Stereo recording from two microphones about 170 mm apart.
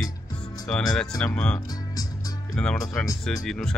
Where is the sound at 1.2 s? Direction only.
5° left (ahead or behind).